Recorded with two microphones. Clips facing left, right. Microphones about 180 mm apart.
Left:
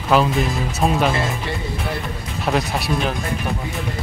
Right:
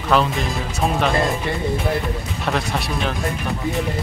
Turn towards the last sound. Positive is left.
turn(degrees=5)  # may be behind; listen again after turning